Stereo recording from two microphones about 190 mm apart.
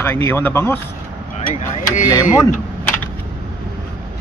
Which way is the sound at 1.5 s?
40° left (ahead or behind).